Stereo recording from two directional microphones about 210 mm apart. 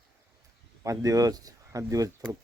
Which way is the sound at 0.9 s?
15° right (ahead or behind).